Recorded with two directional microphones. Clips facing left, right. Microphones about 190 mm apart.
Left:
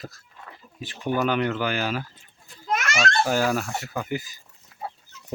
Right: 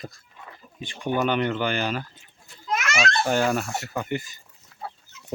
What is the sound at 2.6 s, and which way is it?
Babbling, 45° left (ahead or behind).